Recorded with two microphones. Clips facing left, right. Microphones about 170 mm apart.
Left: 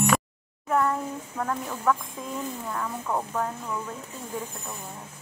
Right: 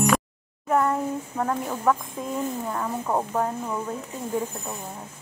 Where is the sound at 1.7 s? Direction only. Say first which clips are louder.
Right 3 dB; 25° right (ahead or behind).